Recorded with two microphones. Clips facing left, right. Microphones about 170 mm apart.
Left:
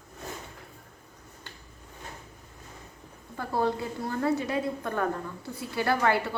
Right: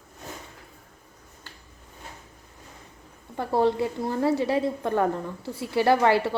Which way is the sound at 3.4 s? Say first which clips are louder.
Right 5 dB; 25° right (ahead or behind).